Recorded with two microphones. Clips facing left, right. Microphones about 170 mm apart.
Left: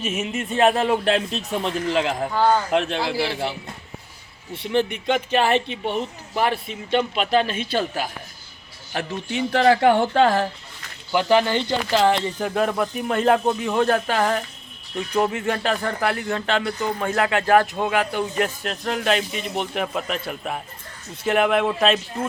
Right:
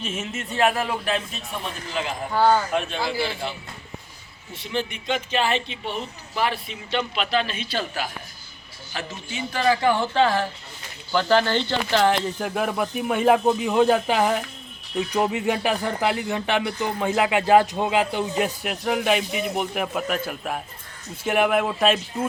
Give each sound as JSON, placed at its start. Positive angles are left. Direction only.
{"t": 0.0, "sound": "speech", "side_deg": 10}
{"t": 1.0, "sound": "speech", "side_deg": 70}
{"t": 1.9, "sound": "speech", "side_deg": 90}
{"t": 2.3, "sound": "speech", "side_deg": -10}
{"t": 3.1, "sound": "speech", "side_deg": 70}
{"t": 4.5, "sound": "a man's voice", "side_deg": 60}
{"t": 8.9, "sound": "speech", "side_deg": 60}
{"t": 11.1, "sound": "speech", "side_deg": 15}